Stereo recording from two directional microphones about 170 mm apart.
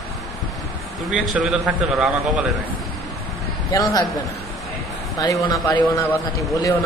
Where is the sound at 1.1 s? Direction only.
Centre (ahead or behind).